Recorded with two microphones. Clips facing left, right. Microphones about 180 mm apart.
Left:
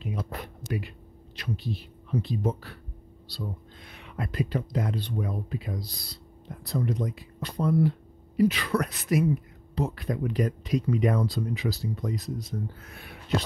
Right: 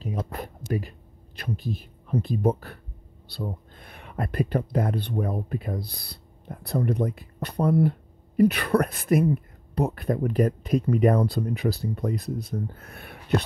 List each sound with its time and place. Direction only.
0.3 s speech: 40° right (ahead or behind)